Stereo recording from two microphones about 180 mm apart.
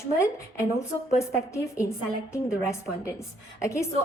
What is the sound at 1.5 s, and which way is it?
A woman's voice, 15° left (ahead or behind).